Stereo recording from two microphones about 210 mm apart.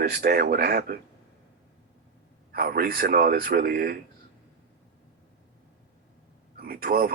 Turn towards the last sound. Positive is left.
turn(degrees=-45)  # may be behind; listen again after turning